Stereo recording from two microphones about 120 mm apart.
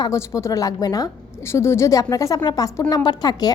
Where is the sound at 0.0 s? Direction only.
25° left (ahead or behind).